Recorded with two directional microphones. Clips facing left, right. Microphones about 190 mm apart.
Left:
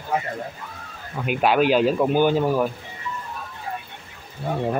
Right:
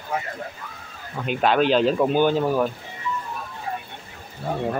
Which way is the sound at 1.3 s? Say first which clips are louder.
Left 1 dB; 10° left (ahead or behind).